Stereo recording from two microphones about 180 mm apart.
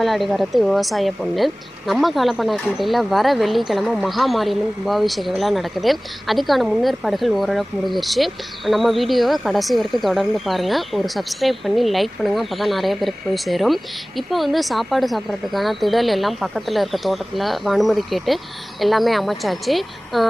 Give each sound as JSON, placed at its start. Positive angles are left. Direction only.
{"t": 0.0, "sound": "speech", "side_deg": 0}